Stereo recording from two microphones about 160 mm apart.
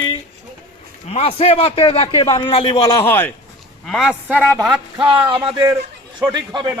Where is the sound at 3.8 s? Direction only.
5° left (ahead or behind).